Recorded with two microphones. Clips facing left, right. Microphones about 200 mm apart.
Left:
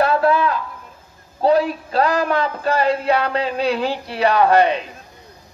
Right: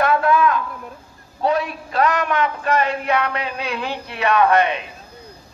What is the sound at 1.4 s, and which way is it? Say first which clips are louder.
A man's voice: left 5 dB; 30° left (ahead or behind).